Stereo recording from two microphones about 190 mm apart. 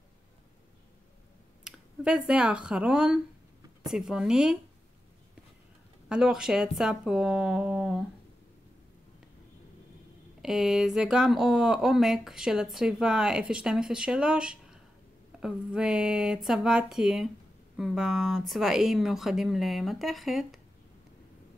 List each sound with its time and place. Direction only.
1.6 s speech: 5° right (ahead or behind)
6.0 s speech: 5° right (ahead or behind)
10.4 s speech: centre (ahead or behind)